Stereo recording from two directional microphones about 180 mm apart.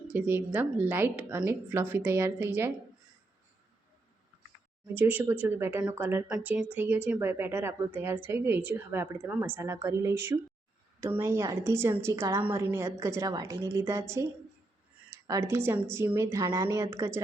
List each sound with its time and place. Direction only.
0.1 s speech: 10° right (ahead or behind)
4.9 s speech: 10° right (ahead or behind)
15.3 s speech: 15° right (ahead or behind)